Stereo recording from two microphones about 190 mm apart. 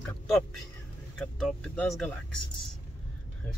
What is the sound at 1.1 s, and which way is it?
Speech, 5° left (ahead or behind).